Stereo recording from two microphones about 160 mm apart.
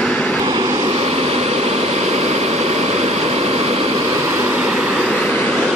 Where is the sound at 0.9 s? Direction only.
40° right (ahead or behind).